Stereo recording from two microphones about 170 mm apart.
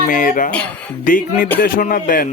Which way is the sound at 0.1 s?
50° left (ahead or behind).